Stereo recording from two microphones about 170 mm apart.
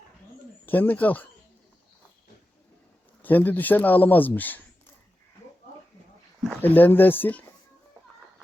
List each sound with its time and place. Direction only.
0.6 s speech: 10° left (ahead or behind)
3.2 s speech: 10° left (ahead or behind)
6.6 s speech: 10° left (ahead or behind)